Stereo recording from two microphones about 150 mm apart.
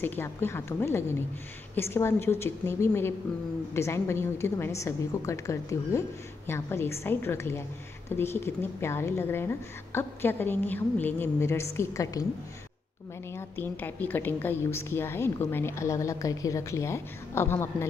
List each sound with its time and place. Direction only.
0.0 s a woman's voice: 15° left (ahead or behind)
13.3 s a woman's voice: 15° left (ahead or behind)